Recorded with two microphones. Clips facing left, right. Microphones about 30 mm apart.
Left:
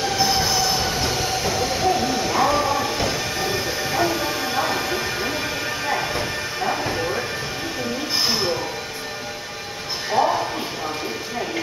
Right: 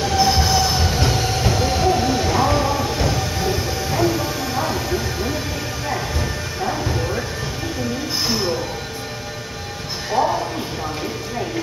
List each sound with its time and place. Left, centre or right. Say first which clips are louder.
0.0 s train: right 3 dB; centre
2.3 s music: right 1 dB; centre; by 5.3 s left
6.8 s a sound: even; left
10.2 s music: even; left